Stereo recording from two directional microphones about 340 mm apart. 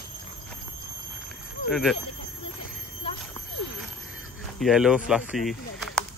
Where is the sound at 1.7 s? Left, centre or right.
Centre.